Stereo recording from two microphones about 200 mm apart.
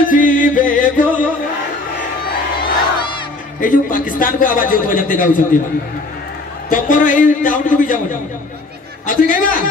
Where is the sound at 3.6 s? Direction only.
40° left (ahead or behind).